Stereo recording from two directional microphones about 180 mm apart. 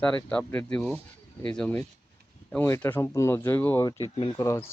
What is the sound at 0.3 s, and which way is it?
Speech, 5° left (ahead or behind).